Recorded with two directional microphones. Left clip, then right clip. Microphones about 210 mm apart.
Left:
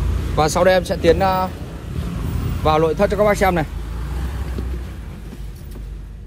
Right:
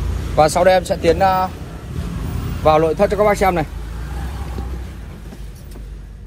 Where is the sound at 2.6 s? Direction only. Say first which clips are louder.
Right 3 dB; 25° left (ahead or behind).